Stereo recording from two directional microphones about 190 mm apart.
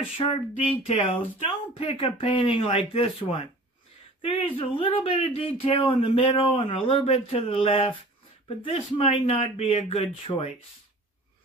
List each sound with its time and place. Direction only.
0.2 s speech: 30° left (ahead or behind)